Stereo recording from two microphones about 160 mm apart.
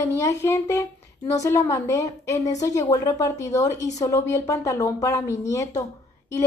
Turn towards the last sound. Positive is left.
turn(degrees=20)  # may be behind; listen again after turning